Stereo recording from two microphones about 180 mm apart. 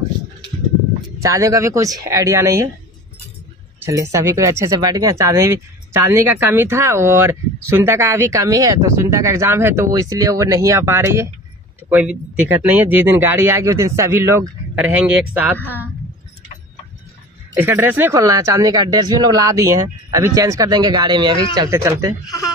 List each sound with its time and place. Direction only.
1.2 s speech: 15° right (ahead or behind)
3.8 s speech: 15° right (ahead or behind)
17.6 s speech: 10° right (ahead or behind)